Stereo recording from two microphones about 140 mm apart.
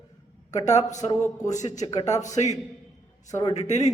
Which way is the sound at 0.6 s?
55° left (ahead or behind).